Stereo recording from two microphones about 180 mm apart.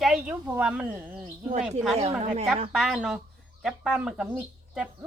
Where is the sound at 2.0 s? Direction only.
40° right (ahead or behind).